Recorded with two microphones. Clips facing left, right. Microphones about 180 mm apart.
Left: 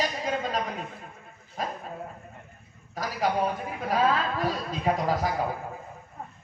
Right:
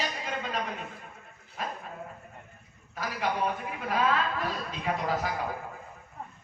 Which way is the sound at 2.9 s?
40° left (ahead or behind).